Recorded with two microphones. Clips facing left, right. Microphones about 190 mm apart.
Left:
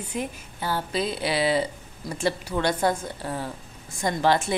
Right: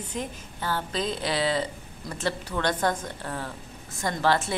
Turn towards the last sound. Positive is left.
turn(degrees=15)  # may be behind; listen again after turning